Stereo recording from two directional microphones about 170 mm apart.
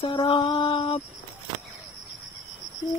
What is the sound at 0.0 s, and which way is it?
Mantra, 25° left (ahead or behind).